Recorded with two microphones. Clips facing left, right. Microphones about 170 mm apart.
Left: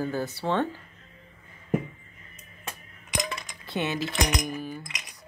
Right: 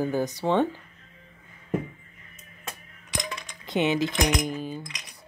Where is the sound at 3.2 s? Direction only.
5° left (ahead or behind).